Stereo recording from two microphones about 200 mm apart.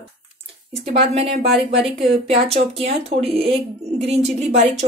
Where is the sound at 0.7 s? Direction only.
30° right (ahead or behind).